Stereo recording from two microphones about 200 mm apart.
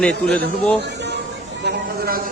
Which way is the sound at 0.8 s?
60° right (ahead or behind).